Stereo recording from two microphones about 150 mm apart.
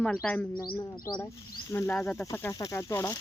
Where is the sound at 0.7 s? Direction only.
25° left (ahead or behind).